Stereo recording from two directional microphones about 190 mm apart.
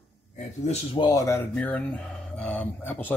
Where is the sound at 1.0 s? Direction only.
15° left (ahead or behind).